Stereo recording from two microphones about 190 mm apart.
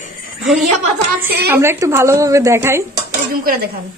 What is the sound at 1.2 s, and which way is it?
Speech, 10° right (ahead or behind).